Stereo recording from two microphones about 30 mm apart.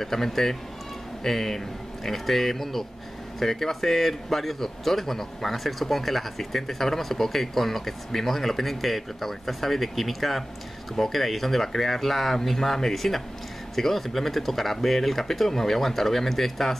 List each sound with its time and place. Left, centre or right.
0.0 s speech: centre